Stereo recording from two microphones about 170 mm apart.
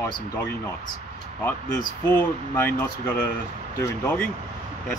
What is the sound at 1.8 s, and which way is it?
Speech, 15° left (ahead or behind).